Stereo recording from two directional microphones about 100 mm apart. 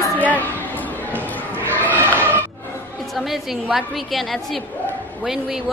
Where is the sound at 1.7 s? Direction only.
15° left (ahead or behind).